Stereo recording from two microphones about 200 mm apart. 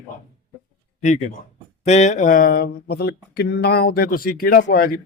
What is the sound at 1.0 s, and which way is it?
A man's voice, 35° left (ahead or behind).